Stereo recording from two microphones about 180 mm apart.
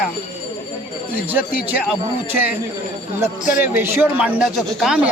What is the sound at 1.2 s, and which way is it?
Speech, 10° right (ahead or behind).